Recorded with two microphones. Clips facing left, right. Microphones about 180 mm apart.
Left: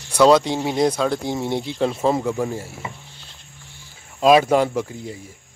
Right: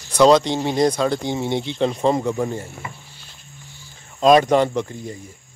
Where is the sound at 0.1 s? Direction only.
5° left (ahead or behind).